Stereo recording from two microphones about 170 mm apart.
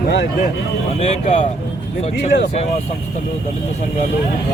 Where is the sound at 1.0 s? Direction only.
45° left (ahead or behind).